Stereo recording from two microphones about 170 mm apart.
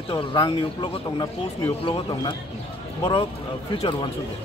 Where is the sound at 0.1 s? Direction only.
25° left (ahead or behind).